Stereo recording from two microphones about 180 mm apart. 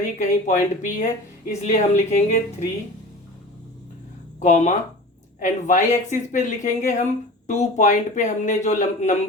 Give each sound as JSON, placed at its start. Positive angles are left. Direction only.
{"t": 0.0, "sound": "a woman's voice", "side_deg": 40}
{"t": 4.4, "sound": "a woman's voice", "side_deg": 40}